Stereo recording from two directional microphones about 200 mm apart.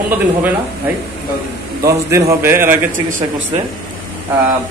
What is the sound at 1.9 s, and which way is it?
Speech, 15° right (ahead or behind).